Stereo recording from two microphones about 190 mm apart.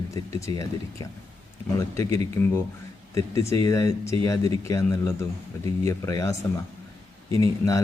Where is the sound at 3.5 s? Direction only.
15° left (ahead or behind).